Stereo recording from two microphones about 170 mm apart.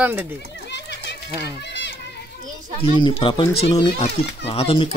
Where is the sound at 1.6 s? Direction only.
90° left.